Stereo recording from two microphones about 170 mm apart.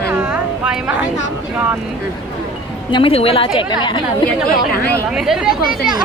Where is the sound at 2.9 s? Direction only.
35° left (ahead or behind).